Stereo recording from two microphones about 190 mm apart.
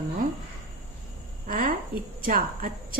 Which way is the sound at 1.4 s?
50° right (ahead or behind).